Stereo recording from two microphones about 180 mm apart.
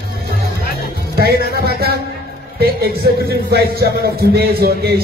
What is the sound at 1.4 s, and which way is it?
Speech, 60° right (ahead or behind).